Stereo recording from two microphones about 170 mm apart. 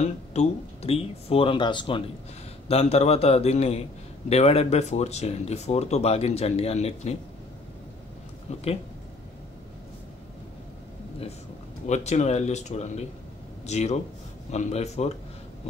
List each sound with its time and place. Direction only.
0.0 s speech: 40° left (ahead or behind)
8.5 s speech: 40° left (ahead or behind)
11.8 s speech: 40° left (ahead or behind)